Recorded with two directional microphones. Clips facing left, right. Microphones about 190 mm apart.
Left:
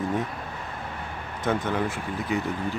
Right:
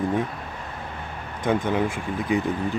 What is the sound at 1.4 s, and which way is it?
Speech, 15° right (ahead or behind).